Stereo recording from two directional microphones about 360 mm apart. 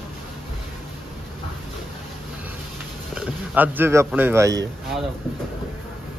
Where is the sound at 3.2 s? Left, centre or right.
Centre.